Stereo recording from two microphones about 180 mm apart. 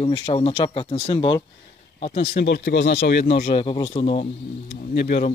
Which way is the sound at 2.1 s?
75° left (ahead or behind).